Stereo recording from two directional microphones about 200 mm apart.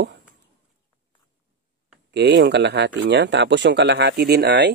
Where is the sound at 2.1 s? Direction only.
55° right (ahead or behind).